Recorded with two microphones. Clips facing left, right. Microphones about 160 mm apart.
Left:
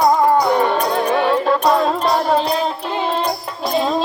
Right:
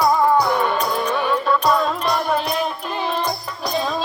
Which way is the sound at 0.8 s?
70° left (ahead or behind).